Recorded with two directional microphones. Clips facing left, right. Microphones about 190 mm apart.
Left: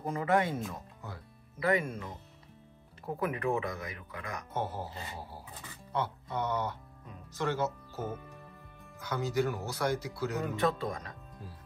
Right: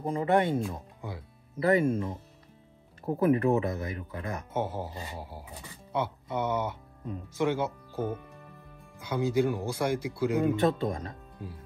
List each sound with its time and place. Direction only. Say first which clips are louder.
0.0 s speech: right 4 dB; 30° right (ahead or behind)
1.6 s speech: right 6 dB; 30° right (ahead or behind)
4.6 s speech: right 3 dB; 10° right (ahead or behind)
9.1 s speech: right 5 dB; 15° right (ahead or behind)
10.8 s speech: right 5 dB; 25° right (ahead or behind)